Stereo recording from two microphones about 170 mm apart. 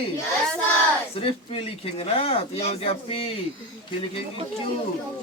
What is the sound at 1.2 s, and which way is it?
A man's voice, 35° left (ahead or behind).